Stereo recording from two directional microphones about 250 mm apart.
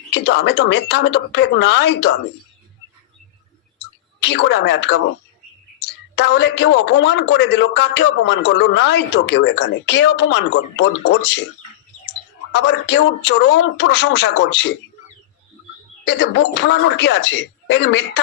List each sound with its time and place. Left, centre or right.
0.1 s speech: left
4.2 s speech: left
12.5 s speech: left
16.0 s speech: left